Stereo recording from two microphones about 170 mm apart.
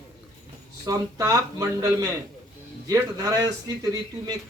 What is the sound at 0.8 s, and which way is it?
Speech, 20° right (ahead or behind).